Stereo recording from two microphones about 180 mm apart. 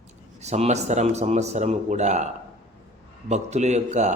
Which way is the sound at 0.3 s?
40° right (ahead or behind).